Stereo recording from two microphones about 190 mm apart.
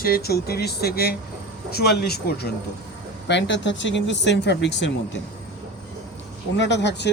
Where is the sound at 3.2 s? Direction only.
65° left (ahead or behind).